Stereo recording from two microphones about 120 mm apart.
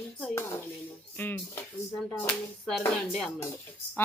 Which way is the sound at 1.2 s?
15° left (ahead or behind).